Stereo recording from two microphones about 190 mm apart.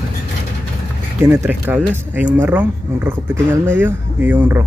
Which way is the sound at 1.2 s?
15° right (ahead or behind).